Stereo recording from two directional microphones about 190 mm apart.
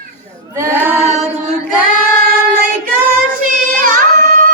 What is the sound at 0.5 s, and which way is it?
Child singing, 15° right (ahead or behind).